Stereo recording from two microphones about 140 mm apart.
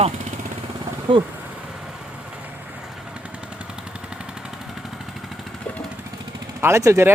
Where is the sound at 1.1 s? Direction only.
35° right (ahead or behind).